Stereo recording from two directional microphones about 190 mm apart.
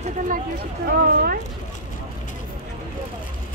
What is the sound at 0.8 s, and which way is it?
Speech, 55° right (ahead or behind).